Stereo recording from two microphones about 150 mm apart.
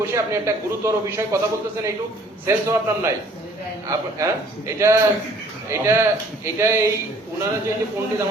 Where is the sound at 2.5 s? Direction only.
20° right (ahead or behind).